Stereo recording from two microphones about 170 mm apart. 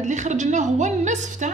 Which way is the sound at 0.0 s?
45° right (ahead or behind).